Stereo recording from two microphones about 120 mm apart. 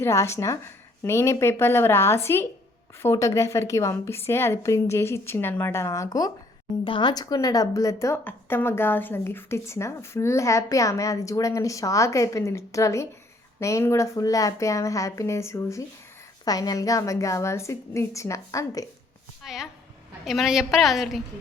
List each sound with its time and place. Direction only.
0.0 s a woman's voice: 25° left (ahead or behind)
6.8 s a woman's voice: 40° left (ahead or behind)
19.4 s a woman's voice: 5° right (ahead or behind)